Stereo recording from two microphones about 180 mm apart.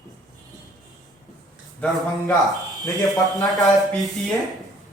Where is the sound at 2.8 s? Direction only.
20° left (ahead or behind).